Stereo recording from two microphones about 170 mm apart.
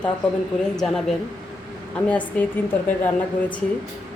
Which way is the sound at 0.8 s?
5° left (ahead or behind).